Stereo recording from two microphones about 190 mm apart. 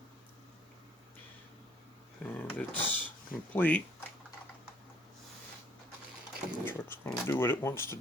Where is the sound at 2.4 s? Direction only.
10° left (ahead or behind).